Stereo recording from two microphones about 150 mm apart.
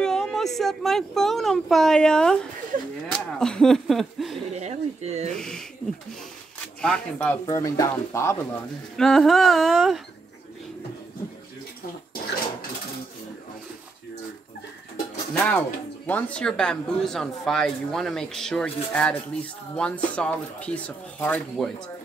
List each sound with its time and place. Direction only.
0.0 s speech: 5° left (ahead or behind)
4.6 s speech: 45° right (ahead or behind)
5.3 s speech: 5° left (ahead or behind)
6.8 s speech: 5° left (ahead or behind)
7.4 s speech: 20° left (ahead or behind)
8.9 s speech: 5° left (ahead or behind)
15.3 s speech: 10° left (ahead or behind)